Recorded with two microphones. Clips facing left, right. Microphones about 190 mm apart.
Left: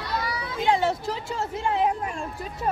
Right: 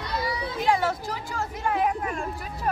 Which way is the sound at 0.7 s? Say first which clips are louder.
Left 2 dB; 25° left (ahead or behind).